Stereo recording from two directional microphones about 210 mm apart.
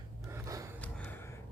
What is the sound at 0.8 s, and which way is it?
Gasp, 5° left (ahead or behind).